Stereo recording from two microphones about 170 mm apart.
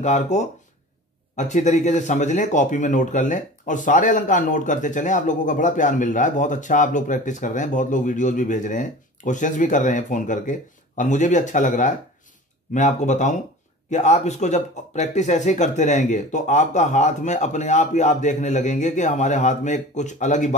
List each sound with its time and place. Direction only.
0.0 s speech: 45° left (ahead or behind)